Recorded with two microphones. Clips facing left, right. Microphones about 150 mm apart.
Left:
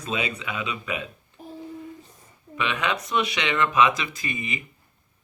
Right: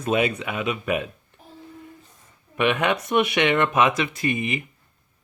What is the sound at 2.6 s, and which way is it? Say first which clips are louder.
Speech: right 5 dB; 55° right (ahead or behind).